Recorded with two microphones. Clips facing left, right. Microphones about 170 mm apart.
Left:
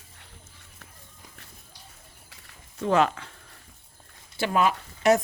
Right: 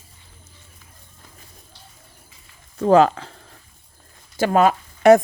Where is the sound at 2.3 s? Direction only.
75° left (ahead or behind).